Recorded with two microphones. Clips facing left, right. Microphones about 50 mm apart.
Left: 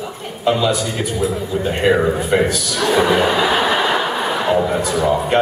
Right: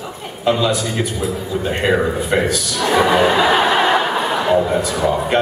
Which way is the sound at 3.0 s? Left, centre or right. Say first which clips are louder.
Right 1 dB; centre.